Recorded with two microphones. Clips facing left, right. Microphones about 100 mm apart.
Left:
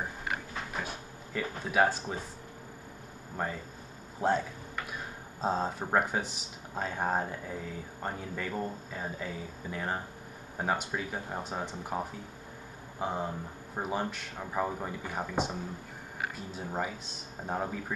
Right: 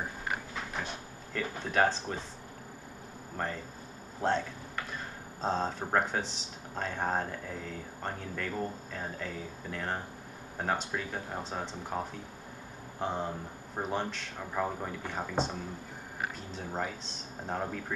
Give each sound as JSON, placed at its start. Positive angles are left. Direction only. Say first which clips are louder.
{"t": 0.8, "sound": "speech", "louder": "even", "side_deg": 5}
{"t": 3.4, "sound": "speech", "louder": "left 1 dB", "side_deg": 10}
{"t": 5.4, "sound": "speech", "louder": "left 1 dB", "side_deg": 10}
{"t": 16.5, "sound": "speech", "louder": "left 2 dB", "side_deg": 5}